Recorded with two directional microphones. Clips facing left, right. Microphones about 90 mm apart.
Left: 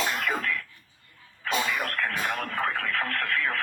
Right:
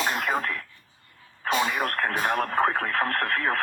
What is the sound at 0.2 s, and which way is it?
Cough, 35° right (ahead or behind).